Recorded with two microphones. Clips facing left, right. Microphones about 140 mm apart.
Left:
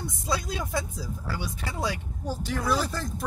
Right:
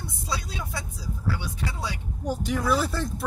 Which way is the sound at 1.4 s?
50° left (ahead or behind).